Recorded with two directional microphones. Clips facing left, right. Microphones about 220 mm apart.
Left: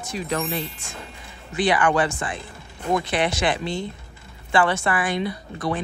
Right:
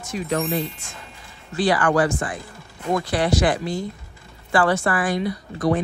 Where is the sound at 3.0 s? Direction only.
25° left (ahead or behind).